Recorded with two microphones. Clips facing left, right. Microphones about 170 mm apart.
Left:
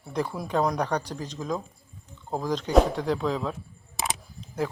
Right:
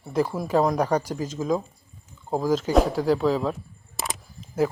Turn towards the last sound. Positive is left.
turn(degrees=-5)  # may be behind; listen again after turning